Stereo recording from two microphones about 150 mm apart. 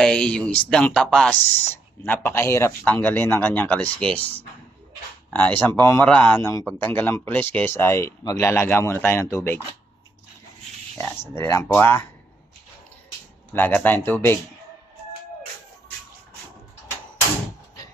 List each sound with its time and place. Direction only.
0.0 s speech: 5° left (ahead or behind)
11.0 s speech: 10° left (ahead or behind)
13.5 s speech: 10° left (ahead or behind)